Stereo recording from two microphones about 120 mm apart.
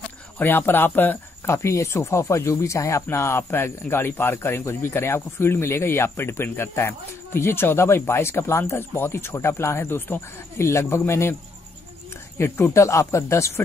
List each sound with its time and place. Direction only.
0.4 s speech: 15° left (ahead or behind)
12.4 s speech: 20° left (ahead or behind)